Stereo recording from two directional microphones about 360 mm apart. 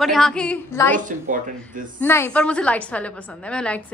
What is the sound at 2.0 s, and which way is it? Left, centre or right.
A woman's voice, centre.